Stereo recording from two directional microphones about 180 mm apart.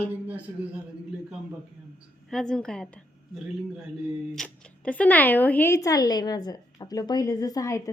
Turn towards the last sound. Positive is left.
turn(degrees=15)  # may be behind; listen again after turning